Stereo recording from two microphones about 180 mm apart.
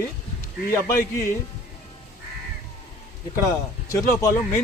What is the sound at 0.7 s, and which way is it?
Speech, 15° left (ahead or behind).